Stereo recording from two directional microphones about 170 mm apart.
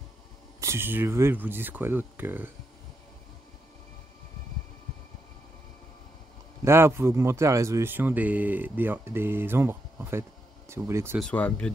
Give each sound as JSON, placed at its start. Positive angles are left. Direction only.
{"t": 0.6, "sound": "speech", "side_deg": -15}
{"t": 6.6, "sound": "speech", "side_deg": -15}
{"t": 11.1, "sound": "speech", "side_deg": 5}